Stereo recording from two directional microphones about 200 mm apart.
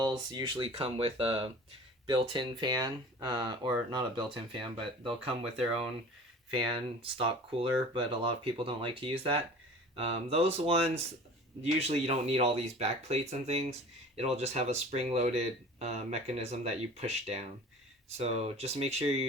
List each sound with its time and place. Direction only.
0.0 s speech: 20° right (ahead or behind)
7.2 s speech: 25° right (ahead or behind)